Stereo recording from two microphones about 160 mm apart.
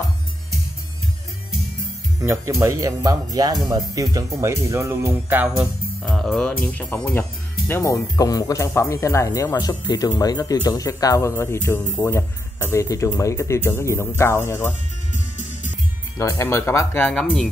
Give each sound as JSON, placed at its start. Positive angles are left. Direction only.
{"t": 2.2, "sound": "speech", "side_deg": -20}
{"t": 16.2, "sound": "speech", "side_deg": 20}